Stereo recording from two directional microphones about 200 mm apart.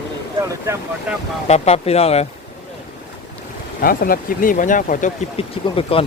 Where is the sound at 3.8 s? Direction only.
45° left (ahead or behind).